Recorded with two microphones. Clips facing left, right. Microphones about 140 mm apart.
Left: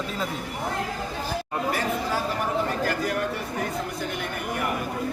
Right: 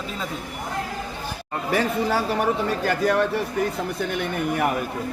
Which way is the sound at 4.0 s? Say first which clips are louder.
Right 5 dB; 70° right (ahead or behind).